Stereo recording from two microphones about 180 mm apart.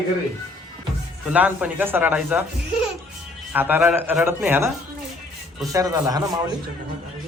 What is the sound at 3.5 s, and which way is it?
Speech, 10° right (ahead or behind).